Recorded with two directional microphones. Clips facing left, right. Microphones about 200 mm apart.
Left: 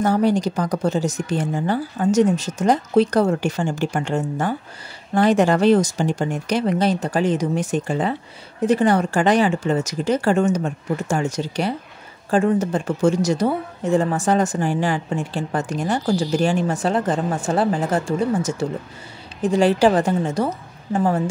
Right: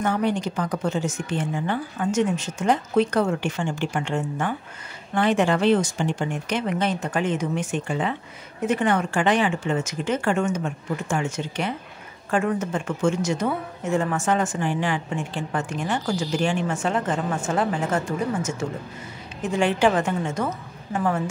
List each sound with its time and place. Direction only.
0.0 s a woman's voice: 35° left (ahead or behind)